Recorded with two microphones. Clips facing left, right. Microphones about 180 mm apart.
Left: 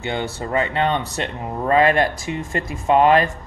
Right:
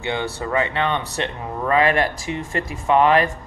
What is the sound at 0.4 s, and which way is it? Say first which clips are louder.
Speech: left 2 dB; 45° left (ahead or behind).